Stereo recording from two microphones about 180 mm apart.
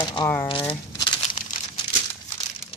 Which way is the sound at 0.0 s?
20° left (ahead or behind).